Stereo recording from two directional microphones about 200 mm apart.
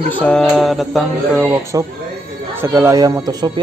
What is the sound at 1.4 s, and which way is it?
Speech, 10° right (ahead or behind).